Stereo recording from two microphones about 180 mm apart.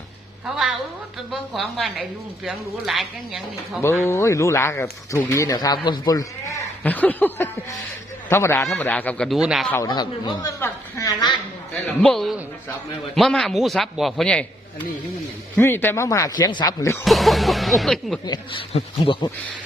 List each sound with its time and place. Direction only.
1.3 s speech: centre (ahead or behind)
3.8 s speech: 15° left (ahead or behind)
6.8 s speech: 10° left (ahead or behind)
9.6 s speech: 15° left (ahead or behind)
9.9 s a man's voice: 25° left (ahead or behind)
11.7 s speech: 5° left (ahead or behind)
17.0 s speech: centre (ahead or behind)
18.3 s a man's voice: 25° left (ahead or behind)